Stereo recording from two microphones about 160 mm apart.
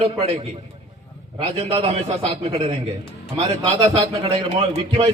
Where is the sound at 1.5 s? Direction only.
35° right (ahead or behind).